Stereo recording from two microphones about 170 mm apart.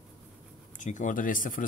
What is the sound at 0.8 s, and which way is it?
Speech, 45° left (ahead or behind).